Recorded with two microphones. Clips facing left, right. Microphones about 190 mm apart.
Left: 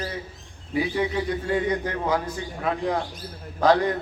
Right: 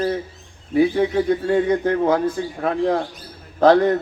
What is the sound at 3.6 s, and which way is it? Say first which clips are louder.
Speech: right 6 dB; 55° right (ahead or behind).